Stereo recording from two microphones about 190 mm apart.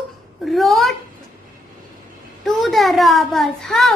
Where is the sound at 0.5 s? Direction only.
Centre (ahead or behind).